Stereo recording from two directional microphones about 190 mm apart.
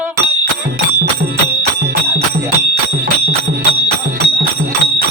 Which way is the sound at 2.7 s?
55° right (ahead or behind).